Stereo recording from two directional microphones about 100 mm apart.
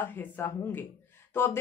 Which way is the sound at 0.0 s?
20° left (ahead or behind).